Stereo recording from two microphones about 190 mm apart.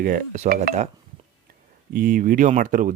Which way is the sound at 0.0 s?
45° right (ahead or behind).